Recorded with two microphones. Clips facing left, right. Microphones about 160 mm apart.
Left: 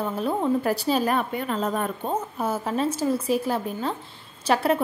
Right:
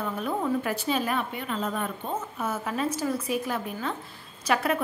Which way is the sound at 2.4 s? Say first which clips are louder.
Left 4 dB; 30° left (ahead or behind).